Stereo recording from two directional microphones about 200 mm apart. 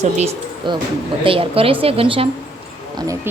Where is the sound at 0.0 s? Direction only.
35° right (ahead or behind).